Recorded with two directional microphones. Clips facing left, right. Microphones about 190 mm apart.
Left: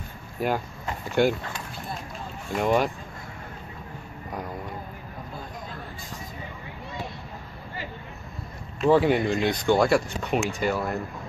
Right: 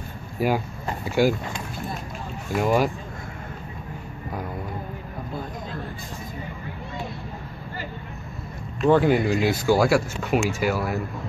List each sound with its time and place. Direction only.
0.4 s speech: 5° right (ahead or behind)
2.5 s speech: 5° right (ahead or behind)
8.8 s speech: centre (ahead or behind)